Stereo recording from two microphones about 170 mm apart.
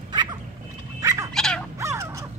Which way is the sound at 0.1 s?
25° right (ahead or behind).